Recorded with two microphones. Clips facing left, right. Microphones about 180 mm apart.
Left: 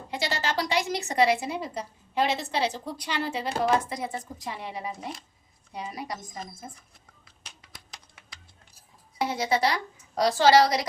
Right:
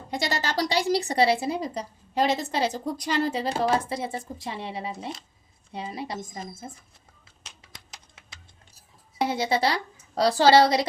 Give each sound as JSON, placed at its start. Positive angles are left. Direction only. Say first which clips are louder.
{"t": 0.1, "sound": "a woman's voice", "louder": "right 1 dB", "side_deg": -45}
{"t": 9.1, "sound": "a woman's voice", "louder": "right 2 dB", "side_deg": -30}